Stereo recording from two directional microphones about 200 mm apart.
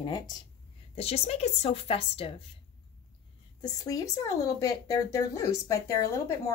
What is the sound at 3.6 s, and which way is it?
Speech, 20° left (ahead or behind).